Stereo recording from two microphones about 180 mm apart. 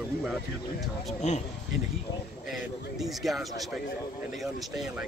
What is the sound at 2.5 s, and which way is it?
Speech, centre (ahead or behind).